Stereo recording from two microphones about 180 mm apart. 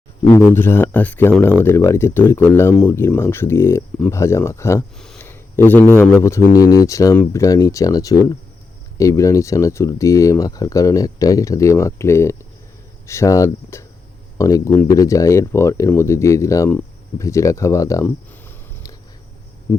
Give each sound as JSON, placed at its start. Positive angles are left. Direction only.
{"t": 0.5, "sound": "speech", "side_deg": 10}